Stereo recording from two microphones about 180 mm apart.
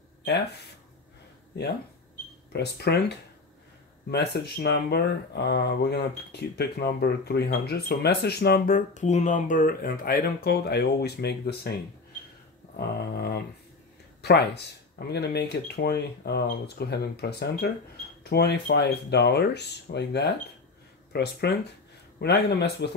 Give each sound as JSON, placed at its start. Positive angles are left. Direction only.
{"t": 1.5, "sound": "speech", "side_deg": 70}
{"t": 4.1, "sound": "speech", "side_deg": 65}
{"t": 12.7, "sound": "a sound", "side_deg": 65}
{"t": 14.2, "sound": "speech", "side_deg": 65}